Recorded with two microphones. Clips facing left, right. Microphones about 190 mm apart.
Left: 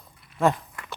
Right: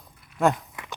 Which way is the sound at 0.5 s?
15° right (ahead or behind).